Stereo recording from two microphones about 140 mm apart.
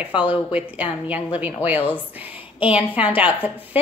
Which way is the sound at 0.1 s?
35° left (ahead or behind).